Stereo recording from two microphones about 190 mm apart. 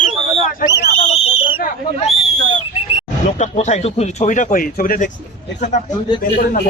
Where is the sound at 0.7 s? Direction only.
60° left (ahead or behind).